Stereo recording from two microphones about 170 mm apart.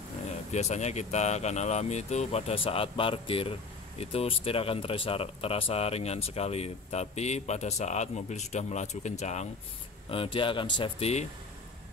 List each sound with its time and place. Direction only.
0.5 s speech: 40° left (ahead or behind)